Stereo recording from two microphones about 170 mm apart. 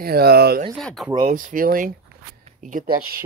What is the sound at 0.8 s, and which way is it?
Speech, centre (ahead or behind).